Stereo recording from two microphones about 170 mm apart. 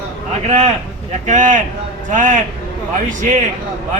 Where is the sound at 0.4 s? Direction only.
40° right (ahead or behind).